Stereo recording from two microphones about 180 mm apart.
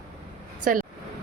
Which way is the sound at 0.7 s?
50° right (ahead or behind).